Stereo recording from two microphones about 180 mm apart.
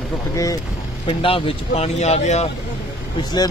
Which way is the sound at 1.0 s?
30° left (ahead or behind).